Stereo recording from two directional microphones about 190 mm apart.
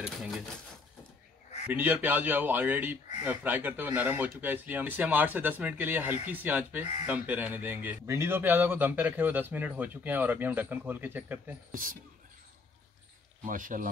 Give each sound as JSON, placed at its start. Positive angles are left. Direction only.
{"t": 0.0, "sound": "speech", "side_deg": 0}
{"t": 1.7, "sound": "speech", "side_deg": -10}
{"t": 11.7, "sound": "speech", "side_deg": -45}
{"t": 13.4, "sound": "speech", "side_deg": -45}